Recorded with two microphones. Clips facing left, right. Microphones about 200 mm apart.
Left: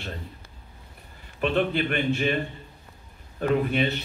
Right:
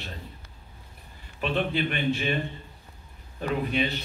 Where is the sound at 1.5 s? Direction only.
50° left (ahead or behind).